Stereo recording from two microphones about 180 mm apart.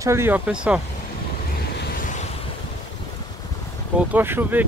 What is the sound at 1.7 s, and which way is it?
Vehicle, 50° left (ahead or behind).